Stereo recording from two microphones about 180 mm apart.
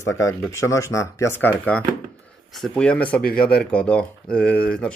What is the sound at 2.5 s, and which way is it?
Speech, centre (ahead or behind).